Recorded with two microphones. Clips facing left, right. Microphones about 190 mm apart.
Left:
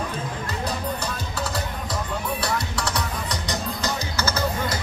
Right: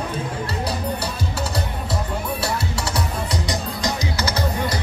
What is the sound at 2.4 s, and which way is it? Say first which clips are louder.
Music: right 1 dB; 10° right (ahead or behind).